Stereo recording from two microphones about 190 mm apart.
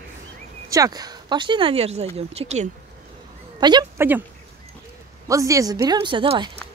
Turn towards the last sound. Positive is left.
turn(degrees=-25)  # may be behind; listen again after turning